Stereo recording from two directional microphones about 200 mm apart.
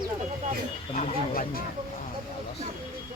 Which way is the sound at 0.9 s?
40° left (ahead or behind).